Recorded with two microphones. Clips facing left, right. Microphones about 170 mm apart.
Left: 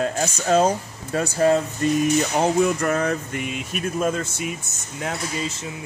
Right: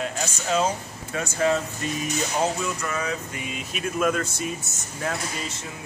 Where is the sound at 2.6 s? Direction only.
55° left (ahead or behind).